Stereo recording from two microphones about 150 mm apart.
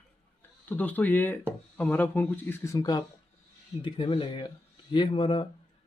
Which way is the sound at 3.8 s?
35° left (ahead or behind).